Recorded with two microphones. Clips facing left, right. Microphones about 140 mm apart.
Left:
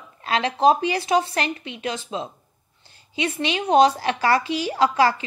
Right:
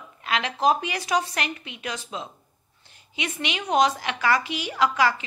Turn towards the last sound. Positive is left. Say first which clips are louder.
# left 3 dB
turn(degrees=30)  # may be behind; listen again after turning